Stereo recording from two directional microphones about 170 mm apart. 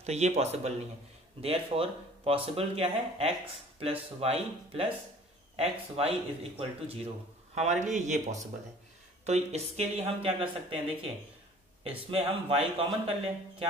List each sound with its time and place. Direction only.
0.0 s speech: 40° right (ahead or behind)